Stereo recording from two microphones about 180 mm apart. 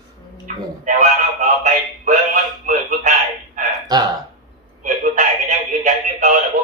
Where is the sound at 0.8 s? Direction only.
45° right (ahead or behind).